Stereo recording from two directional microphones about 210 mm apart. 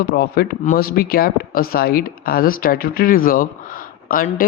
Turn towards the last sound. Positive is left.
turn(degrees=40)  # may be behind; listen again after turning